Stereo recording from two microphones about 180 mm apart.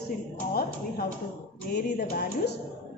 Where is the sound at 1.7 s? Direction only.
65° left (ahead or behind).